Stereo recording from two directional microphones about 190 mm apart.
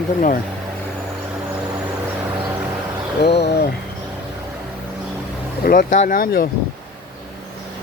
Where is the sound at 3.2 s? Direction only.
60° left (ahead or behind).